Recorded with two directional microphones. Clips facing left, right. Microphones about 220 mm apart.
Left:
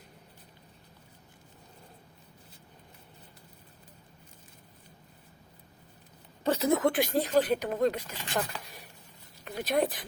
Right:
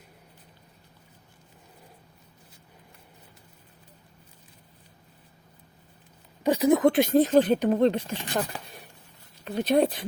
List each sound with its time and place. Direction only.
6.4 s speech: 15° right (ahead or behind)
9.4 s speech: 25° right (ahead or behind)